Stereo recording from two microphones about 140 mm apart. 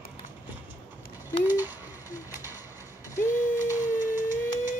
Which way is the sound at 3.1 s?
20° left (ahead or behind).